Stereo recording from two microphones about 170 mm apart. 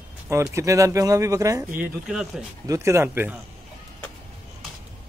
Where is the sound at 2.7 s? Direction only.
15° right (ahead or behind).